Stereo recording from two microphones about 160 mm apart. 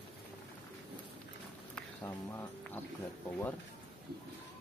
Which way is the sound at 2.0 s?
15° left (ahead or behind).